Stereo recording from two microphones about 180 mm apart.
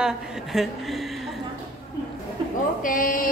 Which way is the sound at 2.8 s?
50° left (ahead or behind).